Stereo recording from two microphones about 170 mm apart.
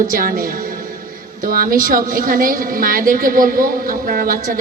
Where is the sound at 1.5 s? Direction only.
55° right (ahead or behind).